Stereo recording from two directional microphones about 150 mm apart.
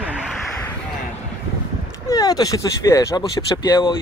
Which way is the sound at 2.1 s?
25° left (ahead or behind).